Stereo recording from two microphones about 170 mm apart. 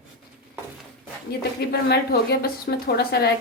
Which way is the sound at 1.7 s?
65° left (ahead or behind).